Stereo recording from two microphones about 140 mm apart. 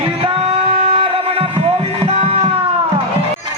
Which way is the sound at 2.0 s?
45° right (ahead or behind).